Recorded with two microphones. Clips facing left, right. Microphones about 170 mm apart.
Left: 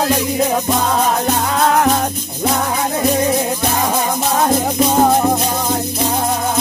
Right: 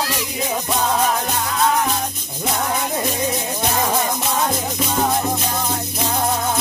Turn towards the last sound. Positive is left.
turn(degrees=55)  # may be behind; listen again after turning